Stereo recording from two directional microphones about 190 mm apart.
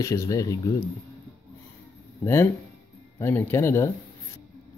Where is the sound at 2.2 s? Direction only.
15° left (ahead or behind).